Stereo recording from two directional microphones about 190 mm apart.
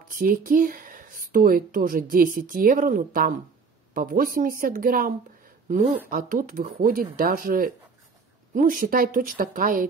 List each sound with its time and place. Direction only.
0.1 s speech: 45° right (ahead or behind)